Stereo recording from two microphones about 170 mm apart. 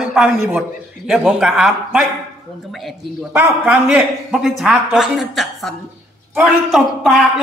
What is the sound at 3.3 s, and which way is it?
Speech, 15° right (ahead or behind).